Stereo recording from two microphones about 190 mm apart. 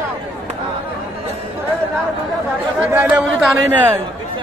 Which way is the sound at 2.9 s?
5° right (ahead or behind).